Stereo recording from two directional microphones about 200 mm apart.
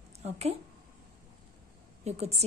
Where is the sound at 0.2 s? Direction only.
30° right (ahead or behind).